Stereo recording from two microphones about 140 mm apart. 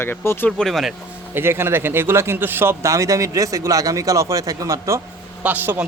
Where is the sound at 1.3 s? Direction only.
15° right (ahead or behind).